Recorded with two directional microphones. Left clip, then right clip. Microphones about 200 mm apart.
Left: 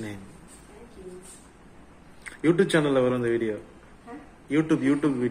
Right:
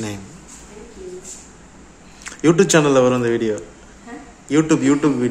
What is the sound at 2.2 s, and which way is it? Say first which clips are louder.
A man's voice: right 8 dB; 10° right (ahead or behind).